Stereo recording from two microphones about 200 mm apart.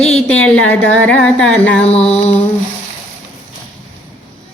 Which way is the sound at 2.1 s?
30° left (ahead or behind).